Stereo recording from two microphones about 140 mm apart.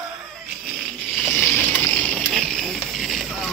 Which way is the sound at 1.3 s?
10° left (ahead or behind).